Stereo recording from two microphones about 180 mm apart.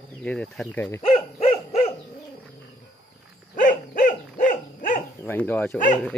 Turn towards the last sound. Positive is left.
turn(degrees=10)  # may be behind; listen again after turning